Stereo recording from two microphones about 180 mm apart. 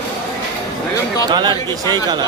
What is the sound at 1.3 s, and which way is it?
Speech, 25° right (ahead or behind).